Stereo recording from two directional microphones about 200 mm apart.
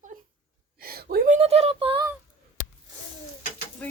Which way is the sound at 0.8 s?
50° right (ahead or behind).